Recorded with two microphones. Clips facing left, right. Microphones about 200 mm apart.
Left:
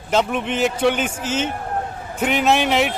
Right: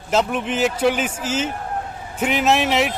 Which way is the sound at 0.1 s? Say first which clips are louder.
Even; centre (ahead or behind).